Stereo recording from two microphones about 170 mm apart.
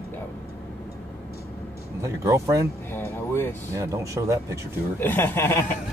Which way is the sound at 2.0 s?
15° right (ahead or behind).